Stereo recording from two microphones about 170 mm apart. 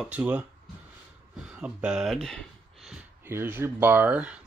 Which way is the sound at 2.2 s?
Centre (ahead or behind).